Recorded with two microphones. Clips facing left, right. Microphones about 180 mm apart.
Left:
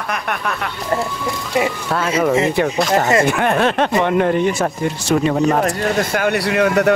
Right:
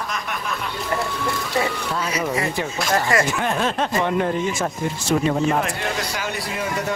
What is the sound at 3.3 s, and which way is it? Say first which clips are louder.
Speech: left 6 dB; 60° left (ahead or behind).